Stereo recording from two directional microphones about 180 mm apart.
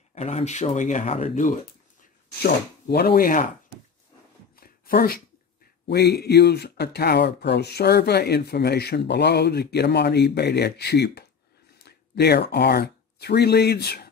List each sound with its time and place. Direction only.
0.1 s speech: 35° left (ahead or behind)
2.4 s speech: 60° left (ahead or behind)
4.6 s a sound: 55° left (ahead or behind)
5.9 s speech: 65° left (ahead or behind)